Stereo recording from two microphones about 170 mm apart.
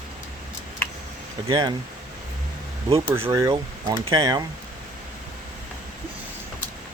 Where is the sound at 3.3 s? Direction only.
20° right (ahead or behind).